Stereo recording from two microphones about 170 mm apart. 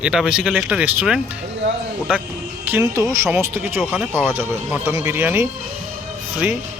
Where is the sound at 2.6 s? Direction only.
15° right (ahead or behind).